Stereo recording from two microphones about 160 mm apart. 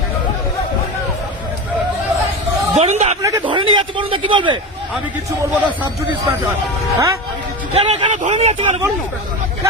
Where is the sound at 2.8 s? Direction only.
40° right (ahead or behind).